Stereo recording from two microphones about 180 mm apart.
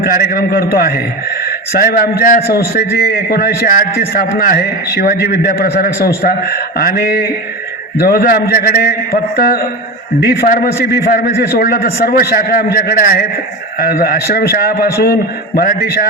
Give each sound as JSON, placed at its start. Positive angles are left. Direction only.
{"t": 0.0, "sound": "a man's voice", "side_deg": 55}